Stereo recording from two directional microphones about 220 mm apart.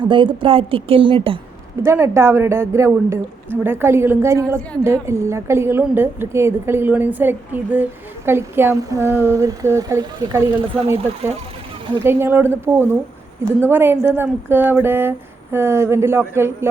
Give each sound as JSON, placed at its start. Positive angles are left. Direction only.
{"t": 0.0, "sound": "a woman's voice", "side_deg": -20}
{"t": 1.8, "sound": "a woman's voice", "side_deg": -10}
{"t": 12.0, "sound": "a woman's voice", "side_deg": -10}